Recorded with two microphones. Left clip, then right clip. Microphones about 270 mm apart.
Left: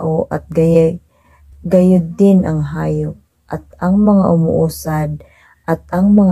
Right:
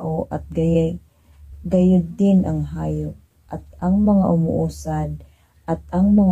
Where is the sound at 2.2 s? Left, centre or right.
Left.